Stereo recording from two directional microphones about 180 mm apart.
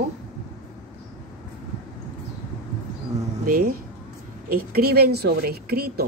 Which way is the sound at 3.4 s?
50° right (ahead or behind).